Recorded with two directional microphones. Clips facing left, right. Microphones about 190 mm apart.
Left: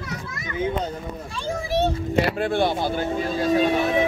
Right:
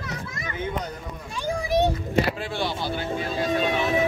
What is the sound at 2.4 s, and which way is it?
Speech, 55° left (ahead or behind).